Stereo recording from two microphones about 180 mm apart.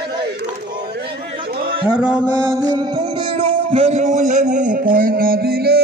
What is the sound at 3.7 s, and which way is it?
A man's voice, 35° right (ahead or behind).